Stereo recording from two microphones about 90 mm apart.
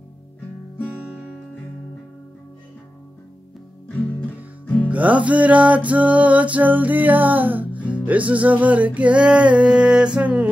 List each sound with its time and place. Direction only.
4.8 s music: 15° right (ahead or behind)